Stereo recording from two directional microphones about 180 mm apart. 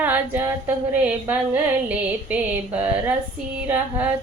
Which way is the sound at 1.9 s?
10° right (ahead or behind).